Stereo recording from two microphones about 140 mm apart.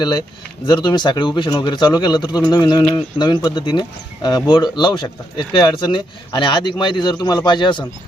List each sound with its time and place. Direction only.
0.7 s speech: 30° left (ahead or behind)